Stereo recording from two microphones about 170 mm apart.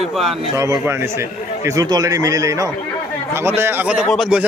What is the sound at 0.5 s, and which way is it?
Speech, 15° right (ahead or behind).